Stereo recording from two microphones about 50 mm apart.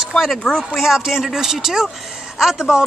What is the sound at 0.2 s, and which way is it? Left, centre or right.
Speech, centre.